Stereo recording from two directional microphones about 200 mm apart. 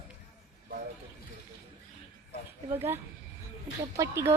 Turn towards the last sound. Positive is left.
turn(degrees=-15)  # may be behind; listen again after turning